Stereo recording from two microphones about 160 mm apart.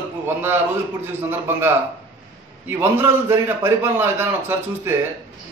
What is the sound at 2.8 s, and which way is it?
Speech, 15° right (ahead or behind).